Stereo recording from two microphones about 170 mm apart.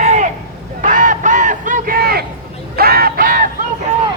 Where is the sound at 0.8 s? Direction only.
50° right (ahead or behind); by 2.3 s 65° right (ahead or behind).